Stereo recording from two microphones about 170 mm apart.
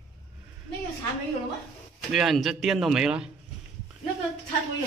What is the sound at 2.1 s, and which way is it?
A man's voice, centre (ahead or behind).